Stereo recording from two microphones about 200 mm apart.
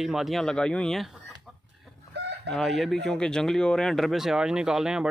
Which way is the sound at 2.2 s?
60° right (ahead or behind).